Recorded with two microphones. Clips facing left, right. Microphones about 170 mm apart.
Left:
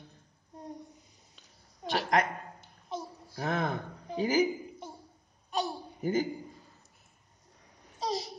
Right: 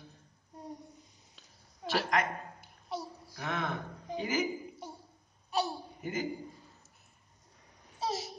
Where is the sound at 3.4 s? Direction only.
35° left (ahead or behind).